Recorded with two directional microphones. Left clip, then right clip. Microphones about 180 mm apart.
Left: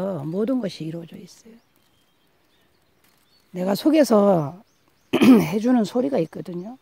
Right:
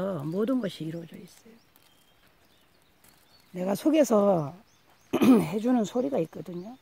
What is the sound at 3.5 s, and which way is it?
Speech, 45° left (ahead or behind).